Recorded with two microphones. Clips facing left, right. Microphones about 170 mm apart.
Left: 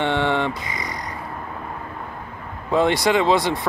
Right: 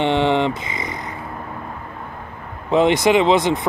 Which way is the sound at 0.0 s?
15° right (ahead or behind).